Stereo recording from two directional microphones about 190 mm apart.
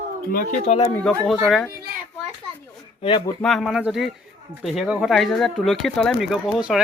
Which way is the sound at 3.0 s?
25° left (ahead or behind).